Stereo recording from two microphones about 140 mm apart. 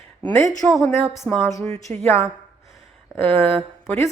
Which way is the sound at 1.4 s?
20° left (ahead or behind).